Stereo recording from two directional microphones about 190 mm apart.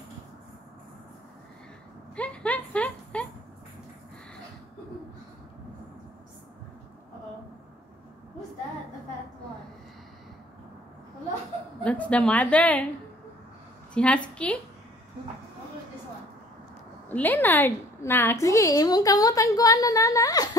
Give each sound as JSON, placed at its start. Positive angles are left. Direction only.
{"t": 2.1, "sound": "a sound", "side_deg": 5}
{"t": 11.8, "sound": "a woman's voice", "side_deg": 5}
{"t": 13.9, "sound": "a woman's voice", "side_deg": 5}
{"t": 17.1, "sound": "a woman's voice", "side_deg": 10}